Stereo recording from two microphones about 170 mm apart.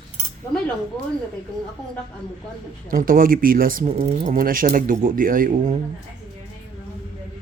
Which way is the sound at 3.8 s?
35° right (ahead or behind).